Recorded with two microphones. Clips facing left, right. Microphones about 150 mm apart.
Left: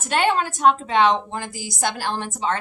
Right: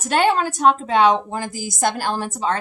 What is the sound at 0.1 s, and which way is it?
A woman's voice, 40° right (ahead or behind).